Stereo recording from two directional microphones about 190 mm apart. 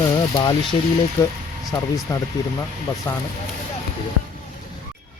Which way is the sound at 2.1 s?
15° left (ahead or behind).